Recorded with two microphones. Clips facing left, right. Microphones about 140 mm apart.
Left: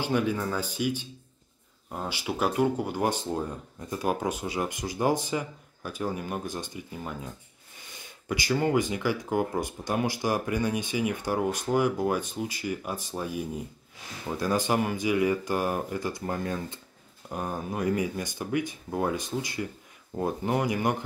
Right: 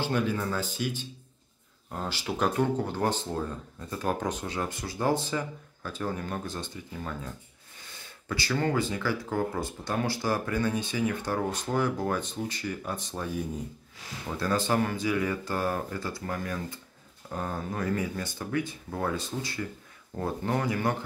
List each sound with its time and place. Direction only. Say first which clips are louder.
0.0 s speech: left 1 dB; 10° left (ahead or behind)
14.3 s speech: left 1 dB; 15° left (ahead or behind)